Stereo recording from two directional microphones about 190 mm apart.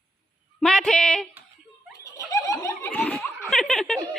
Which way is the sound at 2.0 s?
15° left (ahead or behind).